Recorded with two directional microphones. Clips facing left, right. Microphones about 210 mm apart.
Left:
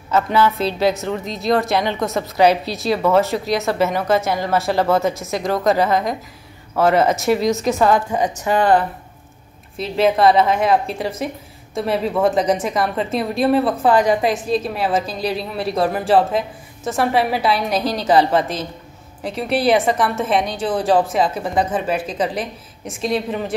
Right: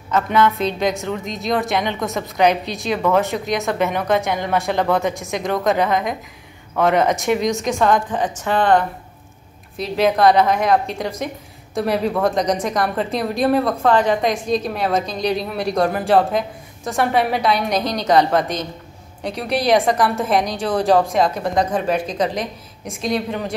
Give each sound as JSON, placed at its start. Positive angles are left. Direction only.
{"t": 0.1, "sound": "a woman's voice", "side_deg": 5}